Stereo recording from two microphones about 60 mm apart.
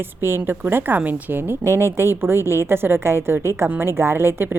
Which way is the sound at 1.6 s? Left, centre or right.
Right.